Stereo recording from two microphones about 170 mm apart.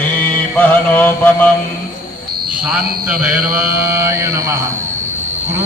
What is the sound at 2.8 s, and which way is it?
Speech, 65° right (ahead or behind).